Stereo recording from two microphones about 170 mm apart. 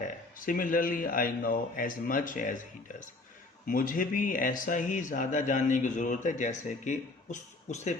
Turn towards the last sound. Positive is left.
turn(degrees=45)  # may be behind; listen again after turning